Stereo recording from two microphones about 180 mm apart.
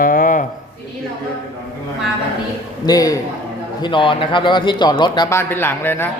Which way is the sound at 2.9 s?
20° left (ahead or behind).